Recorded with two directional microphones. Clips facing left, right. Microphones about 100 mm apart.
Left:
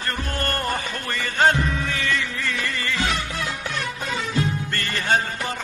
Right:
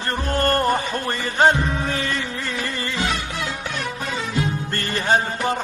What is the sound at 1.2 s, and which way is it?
Music, 20° right (ahead or behind).